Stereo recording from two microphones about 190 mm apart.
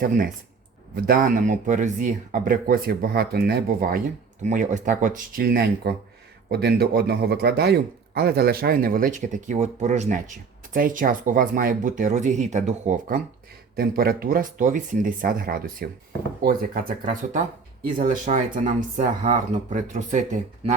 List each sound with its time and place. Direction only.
0.9 s speech: 50° right (ahead or behind)
13.7 s speech: 55° right (ahead or behind)